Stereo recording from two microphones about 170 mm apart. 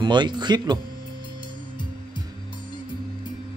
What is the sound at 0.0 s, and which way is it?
Speech, 25° right (ahead or behind).